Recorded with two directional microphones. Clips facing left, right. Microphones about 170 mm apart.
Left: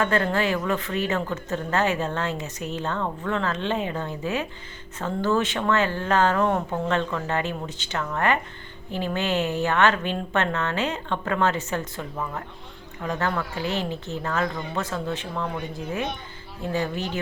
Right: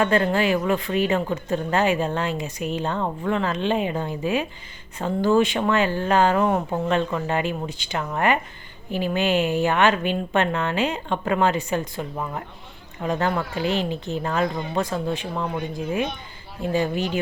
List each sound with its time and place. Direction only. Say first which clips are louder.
0.0 s speech: right 3 dB; 15° right (ahead or behind)